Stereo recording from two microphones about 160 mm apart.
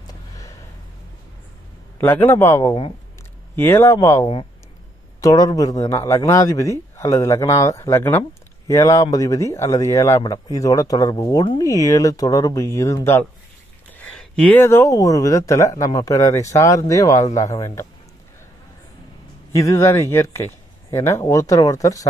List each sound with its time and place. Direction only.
0.0 s a sound: 20° left (ahead or behind)
2.0 s speech: 15° left (ahead or behind)
19.5 s speech: 20° left (ahead or behind)